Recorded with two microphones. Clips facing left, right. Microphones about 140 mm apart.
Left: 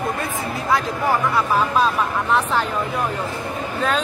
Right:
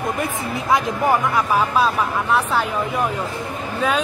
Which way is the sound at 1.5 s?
10° right (ahead or behind).